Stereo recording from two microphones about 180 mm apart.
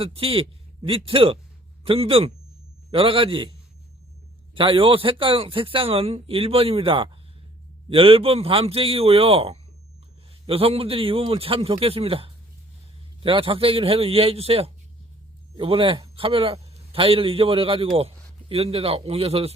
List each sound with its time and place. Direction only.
0.0 s a man's voice: 30° right (ahead or behind)
4.5 s a man's voice: 30° right (ahead or behind)